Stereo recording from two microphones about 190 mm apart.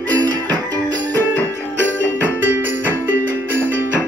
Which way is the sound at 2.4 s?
80° right.